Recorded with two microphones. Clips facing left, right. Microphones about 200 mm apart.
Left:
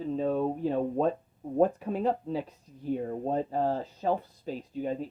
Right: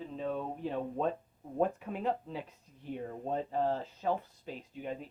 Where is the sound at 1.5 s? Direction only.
35° left (ahead or behind).